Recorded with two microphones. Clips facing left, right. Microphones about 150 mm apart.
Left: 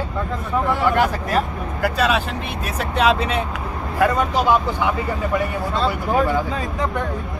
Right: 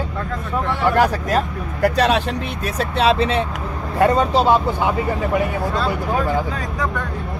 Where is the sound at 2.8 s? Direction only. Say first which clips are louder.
Right 1 dB; 30° right (ahead or behind).